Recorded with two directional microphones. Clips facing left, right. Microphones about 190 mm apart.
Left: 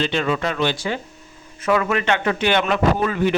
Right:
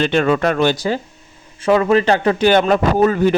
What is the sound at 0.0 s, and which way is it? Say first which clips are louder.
Speech: right 6 dB; 55° right (ahead or behind).